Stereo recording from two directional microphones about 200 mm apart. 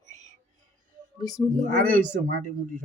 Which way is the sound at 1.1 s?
20° left (ahead or behind).